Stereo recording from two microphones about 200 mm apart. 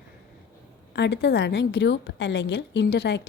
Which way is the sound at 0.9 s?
60° left (ahead or behind).